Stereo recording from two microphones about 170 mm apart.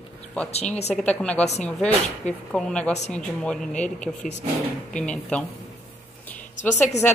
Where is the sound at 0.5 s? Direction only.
40° left (ahead or behind).